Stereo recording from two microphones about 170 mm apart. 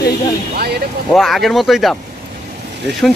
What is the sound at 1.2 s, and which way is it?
Speech, centre (ahead or behind).